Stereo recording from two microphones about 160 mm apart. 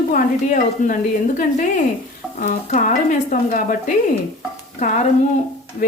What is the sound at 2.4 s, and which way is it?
Speech, 50° left (ahead or behind).